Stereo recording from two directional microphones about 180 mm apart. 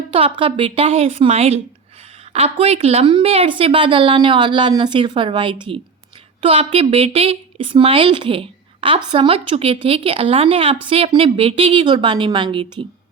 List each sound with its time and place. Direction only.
0.1 s a woman's voice: 30° right (ahead or behind)